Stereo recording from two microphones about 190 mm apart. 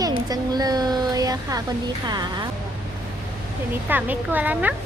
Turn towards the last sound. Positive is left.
turn(degrees=-10)  # may be behind; listen again after turning